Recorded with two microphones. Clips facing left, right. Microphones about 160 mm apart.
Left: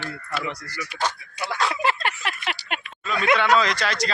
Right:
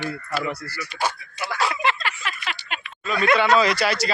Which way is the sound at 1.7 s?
40° left (ahead or behind).